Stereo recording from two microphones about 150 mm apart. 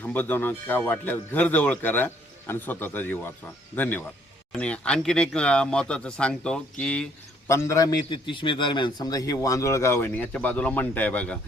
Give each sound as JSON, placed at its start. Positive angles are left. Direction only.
{"t": 0.0, "sound": "speech", "side_deg": 10}
{"t": 7.4, "sound": "a man's voice", "side_deg": 20}